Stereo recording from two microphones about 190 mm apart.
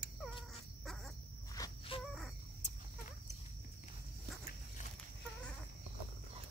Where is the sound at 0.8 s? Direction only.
Centre (ahead or behind).